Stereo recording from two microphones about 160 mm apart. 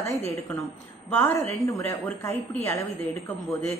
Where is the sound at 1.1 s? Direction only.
10° left (ahead or behind).